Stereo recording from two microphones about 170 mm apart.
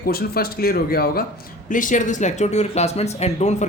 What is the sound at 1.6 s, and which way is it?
Speech, 50° left (ahead or behind).